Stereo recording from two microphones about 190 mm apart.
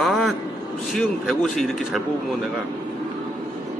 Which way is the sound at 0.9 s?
Centre (ahead or behind).